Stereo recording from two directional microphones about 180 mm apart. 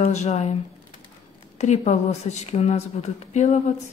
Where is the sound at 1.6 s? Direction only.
40° left (ahead or behind).